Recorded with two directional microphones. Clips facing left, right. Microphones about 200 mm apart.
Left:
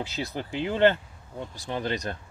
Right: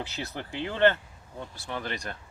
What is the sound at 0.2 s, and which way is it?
Speech, 15° left (ahead or behind).